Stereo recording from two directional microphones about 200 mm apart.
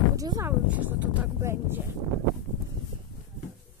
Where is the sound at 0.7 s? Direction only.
5° right (ahead or behind).